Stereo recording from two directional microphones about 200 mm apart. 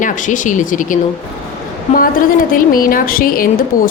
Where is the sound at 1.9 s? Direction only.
30° left (ahead or behind).